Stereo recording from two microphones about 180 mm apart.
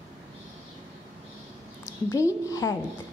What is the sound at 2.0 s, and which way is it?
Speech, 15° left (ahead or behind).